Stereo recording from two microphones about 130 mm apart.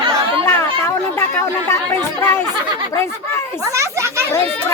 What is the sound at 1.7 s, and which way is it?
Speech, 20° left (ahead or behind).